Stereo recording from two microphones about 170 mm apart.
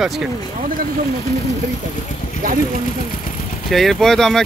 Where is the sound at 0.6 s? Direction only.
55° right (ahead or behind).